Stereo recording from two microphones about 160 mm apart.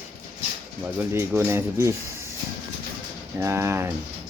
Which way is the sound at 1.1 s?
15° right (ahead or behind).